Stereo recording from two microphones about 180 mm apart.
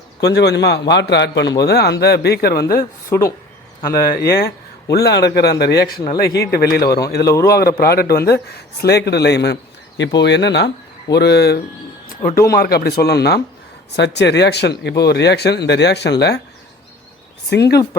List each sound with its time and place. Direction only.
0.2 s a man's voice: 65° left (ahead or behind)
3.1 s speech: 15° left (ahead or behind)
4.2 s a man's voice: 60° left (ahead or behind)
12.0 s a sound: 50° left (ahead or behind)
12.5 s a man's voice: 60° left (ahead or behind)
17.5 s a man's voice: 65° left (ahead or behind)